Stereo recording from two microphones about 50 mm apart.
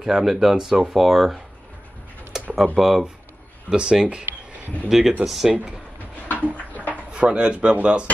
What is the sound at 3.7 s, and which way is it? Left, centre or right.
Speech, centre.